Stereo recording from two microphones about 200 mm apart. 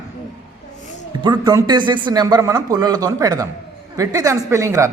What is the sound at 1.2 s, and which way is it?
Speech, 20° right (ahead or behind).